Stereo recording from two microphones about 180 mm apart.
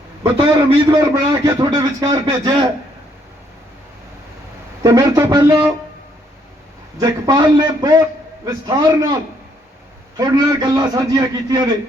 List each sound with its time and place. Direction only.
0.2 s a man's voice: 20° right (ahead or behind)
4.8 s a man's voice: 20° right (ahead or behind)
7.0 s a man's voice: 20° right (ahead or behind)
10.2 s a man's voice: 20° right (ahead or behind)